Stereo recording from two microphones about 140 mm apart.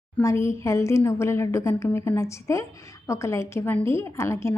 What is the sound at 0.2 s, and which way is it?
A woman's voice, 20° left (ahead or behind).